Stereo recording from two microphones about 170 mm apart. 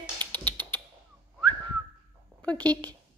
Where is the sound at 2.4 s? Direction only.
10° left (ahead or behind).